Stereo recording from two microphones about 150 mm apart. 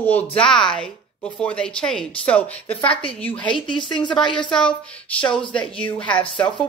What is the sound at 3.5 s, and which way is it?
Speech, 35° left (ahead or behind).